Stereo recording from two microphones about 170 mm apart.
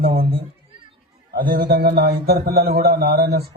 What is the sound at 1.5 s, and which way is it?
A man's voice, 60° right (ahead or behind).